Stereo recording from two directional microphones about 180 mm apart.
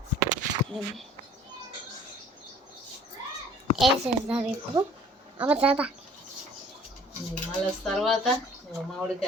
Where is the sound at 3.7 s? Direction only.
5° right (ahead or behind).